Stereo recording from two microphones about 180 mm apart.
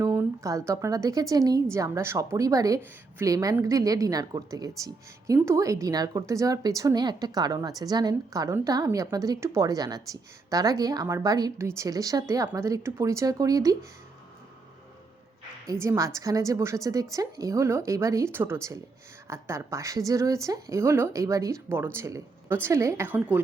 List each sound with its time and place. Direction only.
0.0 s a woman's voice: 15° right (ahead or behind)
15.7 s speech: 15° right (ahead or behind)